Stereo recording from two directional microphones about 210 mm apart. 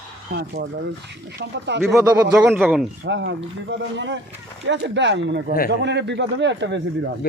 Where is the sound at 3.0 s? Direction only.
60° right (ahead or behind).